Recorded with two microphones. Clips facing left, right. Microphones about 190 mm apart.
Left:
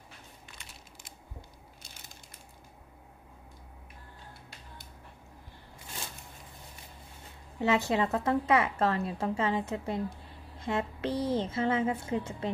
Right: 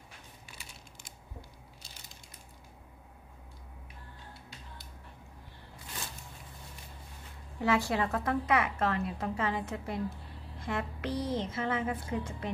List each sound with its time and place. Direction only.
0.5 s crumpling: 10° right (ahead or behind)
7.6 s a woman's voice: 20° left (ahead or behind)